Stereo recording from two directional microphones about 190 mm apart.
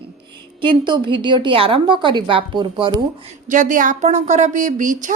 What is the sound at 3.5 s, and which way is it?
Speech, 45° right (ahead or behind).